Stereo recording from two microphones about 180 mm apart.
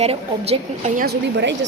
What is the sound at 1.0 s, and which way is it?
Speech, 65° right (ahead or behind).